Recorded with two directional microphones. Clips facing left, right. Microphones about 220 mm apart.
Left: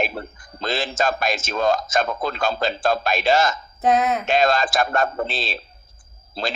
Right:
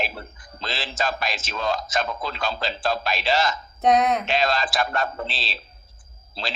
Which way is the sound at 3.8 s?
Centre (ahead or behind).